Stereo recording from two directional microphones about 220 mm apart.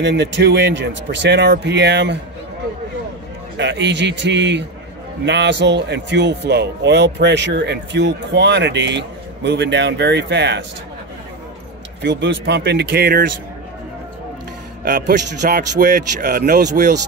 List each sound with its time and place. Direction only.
0.0 s speech: 55° right (ahead or behind)
3.5 s speech: 50° right (ahead or behind)
12.0 s speech: 55° right (ahead or behind)
14.9 s a man's voice: 45° right (ahead or behind)